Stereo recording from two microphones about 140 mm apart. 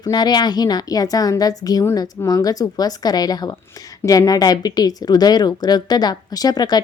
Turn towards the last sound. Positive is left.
turn(degrees=30)  # may be behind; listen again after turning